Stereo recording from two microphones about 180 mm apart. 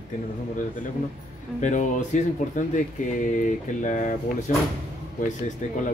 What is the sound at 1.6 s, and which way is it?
Speech, 45° left (ahead or behind).